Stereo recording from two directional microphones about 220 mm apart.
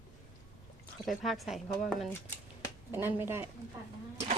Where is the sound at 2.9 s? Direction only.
10° right (ahead or behind).